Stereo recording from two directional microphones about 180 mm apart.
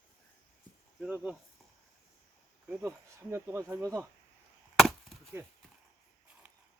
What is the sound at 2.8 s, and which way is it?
Speech, 15° right (ahead or behind).